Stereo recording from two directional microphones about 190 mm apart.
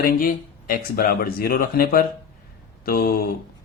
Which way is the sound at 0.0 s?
50° left (ahead or behind).